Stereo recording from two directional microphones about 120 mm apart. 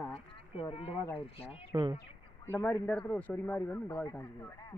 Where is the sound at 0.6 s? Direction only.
50° left (ahead or behind).